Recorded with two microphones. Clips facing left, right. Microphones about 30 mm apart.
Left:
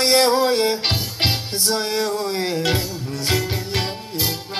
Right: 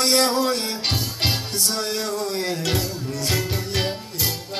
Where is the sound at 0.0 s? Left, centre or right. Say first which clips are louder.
Left 3 dB; centre.